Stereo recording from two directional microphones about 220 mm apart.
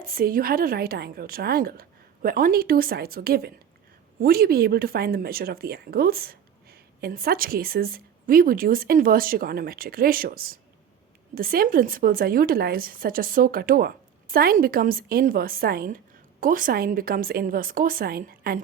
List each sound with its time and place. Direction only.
0.0 s a woman's voice: 40° right (ahead or behind)